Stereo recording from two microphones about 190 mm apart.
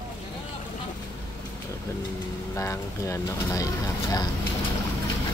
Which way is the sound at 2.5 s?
15° left (ahead or behind).